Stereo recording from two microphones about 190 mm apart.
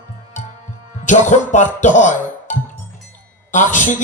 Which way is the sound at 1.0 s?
40° left (ahead or behind).